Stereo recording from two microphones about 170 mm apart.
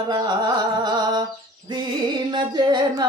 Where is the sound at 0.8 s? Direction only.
25° right (ahead or behind).